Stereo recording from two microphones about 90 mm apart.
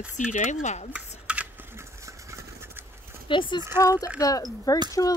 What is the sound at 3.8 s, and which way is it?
Speech, 40° left (ahead or behind).